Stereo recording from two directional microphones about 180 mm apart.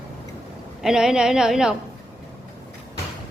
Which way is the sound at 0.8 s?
5° right (ahead or behind).